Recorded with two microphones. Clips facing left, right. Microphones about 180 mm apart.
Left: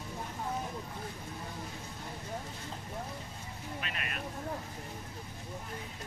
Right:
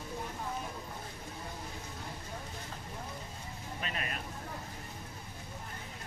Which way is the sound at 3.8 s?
35° right (ahead or behind).